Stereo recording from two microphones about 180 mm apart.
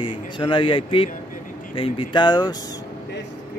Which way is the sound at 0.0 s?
30° left (ahead or behind).